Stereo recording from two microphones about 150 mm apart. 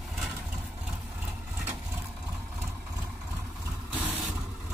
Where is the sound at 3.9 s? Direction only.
15° right (ahead or behind).